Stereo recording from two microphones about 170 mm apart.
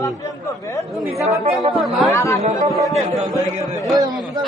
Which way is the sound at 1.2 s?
40° right (ahead or behind).